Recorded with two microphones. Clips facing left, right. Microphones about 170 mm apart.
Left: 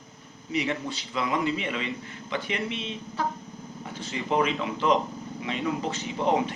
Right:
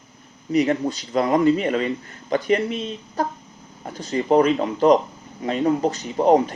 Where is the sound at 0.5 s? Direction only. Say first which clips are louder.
Right 9 dB; 40° right (ahead or behind).